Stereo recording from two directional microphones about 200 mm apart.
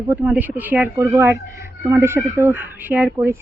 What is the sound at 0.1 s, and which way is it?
Speech, 10° right (ahead or behind).